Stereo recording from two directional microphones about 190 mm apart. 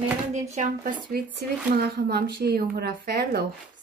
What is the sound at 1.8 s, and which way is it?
Speech, 55° right (ahead or behind).